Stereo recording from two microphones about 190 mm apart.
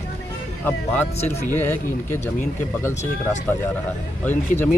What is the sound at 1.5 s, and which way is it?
Speech, 10° left (ahead or behind).